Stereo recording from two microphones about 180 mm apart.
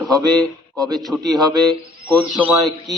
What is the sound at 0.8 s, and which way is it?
A man's voice, centre (ahead or behind).